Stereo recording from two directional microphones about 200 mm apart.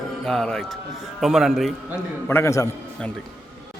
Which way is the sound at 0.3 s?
5° left (ahead or behind).